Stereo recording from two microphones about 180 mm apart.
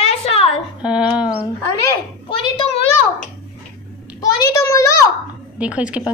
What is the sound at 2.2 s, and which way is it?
Speech, 30° left (ahead or behind).